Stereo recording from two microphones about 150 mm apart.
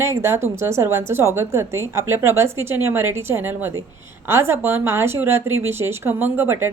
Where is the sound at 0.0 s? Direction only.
20° right (ahead or behind).